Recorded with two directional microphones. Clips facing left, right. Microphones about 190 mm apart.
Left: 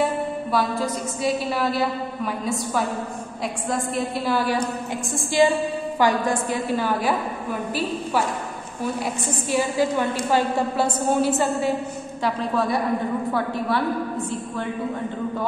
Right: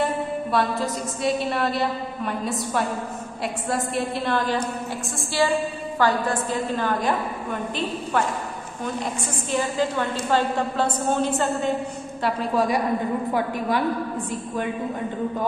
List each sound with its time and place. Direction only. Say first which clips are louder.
0.5 s a woman's voice: even; centre (ahead or behind)
5.4 s a woman's voice: left 3 dB; 20° left (ahead or behind)
9.5 s a woman's voice: left 2 dB; 10° left (ahead or behind)
12.2 s a woman's voice: right 1 dB; 10° right (ahead or behind)